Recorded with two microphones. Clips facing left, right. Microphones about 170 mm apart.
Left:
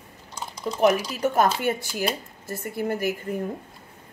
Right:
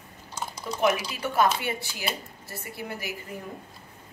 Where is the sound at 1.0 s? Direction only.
40° left (ahead or behind).